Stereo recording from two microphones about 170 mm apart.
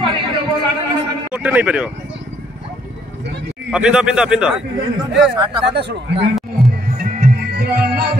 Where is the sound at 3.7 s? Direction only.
5° right (ahead or behind).